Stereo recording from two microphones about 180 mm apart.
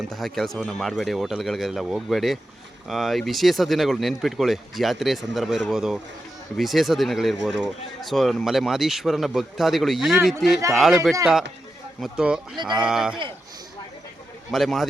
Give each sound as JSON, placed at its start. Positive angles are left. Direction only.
{"t": 0.1, "sound": "speech", "side_deg": 0}
{"t": 12.5, "sound": "speech", "side_deg": -25}
{"t": 12.8, "sound": "speech", "side_deg": -5}
{"t": 14.5, "sound": "speech", "side_deg": 0}